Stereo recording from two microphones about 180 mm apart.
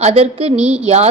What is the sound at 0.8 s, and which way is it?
Speech, 35° right (ahead or behind).